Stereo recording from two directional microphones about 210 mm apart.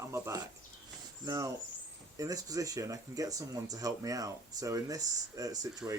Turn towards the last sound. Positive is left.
turn(degrees=-15)  # may be behind; listen again after turning